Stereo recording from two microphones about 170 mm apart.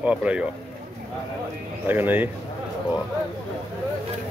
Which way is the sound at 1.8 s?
10° right (ahead or behind).